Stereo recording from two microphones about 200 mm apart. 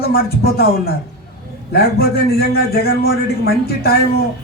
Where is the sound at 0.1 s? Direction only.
50° left (ahead or behind).